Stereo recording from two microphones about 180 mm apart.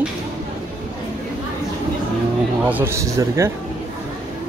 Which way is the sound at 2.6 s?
10° right (ahead or behind).